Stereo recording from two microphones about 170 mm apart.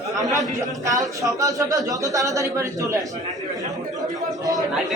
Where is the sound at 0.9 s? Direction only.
20° right (ahead or behind).